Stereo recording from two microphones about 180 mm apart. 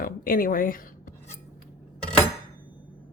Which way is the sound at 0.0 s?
50° left (ahead or behind).